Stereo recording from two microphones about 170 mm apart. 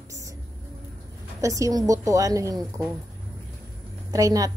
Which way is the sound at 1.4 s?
20° right (ahead or behind).